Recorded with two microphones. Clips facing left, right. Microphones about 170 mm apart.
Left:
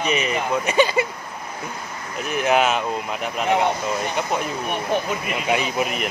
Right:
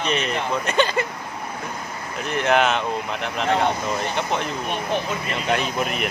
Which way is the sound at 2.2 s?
5° left (ahead or behind).